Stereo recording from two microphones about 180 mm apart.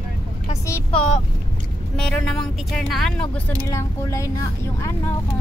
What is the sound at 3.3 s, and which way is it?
Speech, 15° left (ahead or behind).